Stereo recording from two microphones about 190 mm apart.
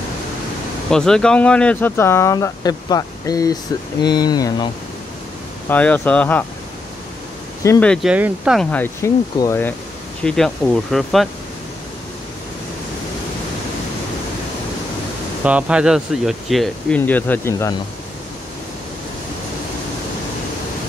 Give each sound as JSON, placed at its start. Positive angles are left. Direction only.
{"t": 0.8, "sound": "speech", "side_deg": 5}
{"t": 5.7, "sound": "speech", "side_deg": 10}
{"t": 7.8, "sound": "speech", "side_deg": 5}
{"t": 8.7, "sound": "speech", "side_deg": 10}
{"t": 15.4, "sound": "speech", "side_deg": -5}